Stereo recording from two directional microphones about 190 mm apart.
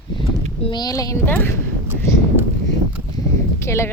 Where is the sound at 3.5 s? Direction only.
15° left (ahead or behind).